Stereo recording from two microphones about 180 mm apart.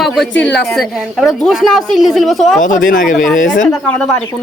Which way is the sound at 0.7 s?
Centre (ahead or behind).